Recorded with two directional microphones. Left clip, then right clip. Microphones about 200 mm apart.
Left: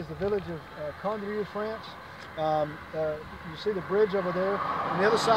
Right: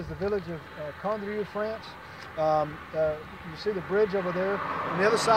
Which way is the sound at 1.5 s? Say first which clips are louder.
Right 2 dB; 20° right (ahead or behind).